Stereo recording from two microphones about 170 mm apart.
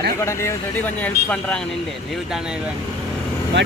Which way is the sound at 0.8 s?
10° left (ahead or behind).